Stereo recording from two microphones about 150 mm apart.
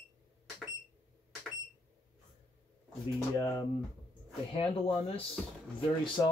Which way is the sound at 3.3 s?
25° left (ahead or behind).